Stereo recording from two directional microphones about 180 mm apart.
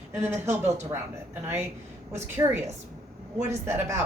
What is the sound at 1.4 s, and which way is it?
Speech, 15° right (ahead or behind).